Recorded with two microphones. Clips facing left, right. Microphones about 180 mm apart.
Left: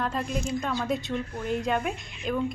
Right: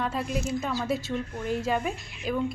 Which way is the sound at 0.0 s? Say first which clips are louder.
Even; 5° right (ahead or behind).